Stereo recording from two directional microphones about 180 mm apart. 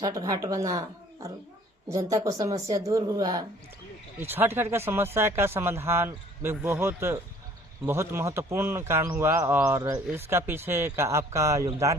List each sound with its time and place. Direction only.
0.0 s speech: 20° right (ahead or behind)